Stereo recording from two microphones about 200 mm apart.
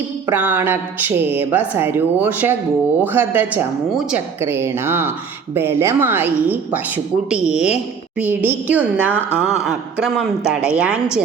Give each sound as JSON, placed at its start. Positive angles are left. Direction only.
{"t": 0.3, "sound": "a woman's voice", "side_deg": -10}